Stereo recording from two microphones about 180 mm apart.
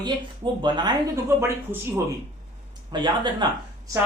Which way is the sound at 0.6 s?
25° right (ahead or behind).